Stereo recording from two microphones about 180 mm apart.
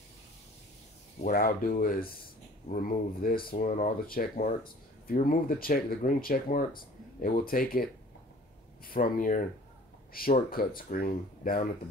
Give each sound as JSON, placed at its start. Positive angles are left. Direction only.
{"t": 1.2, "sound": "speech", "side_deg": 55}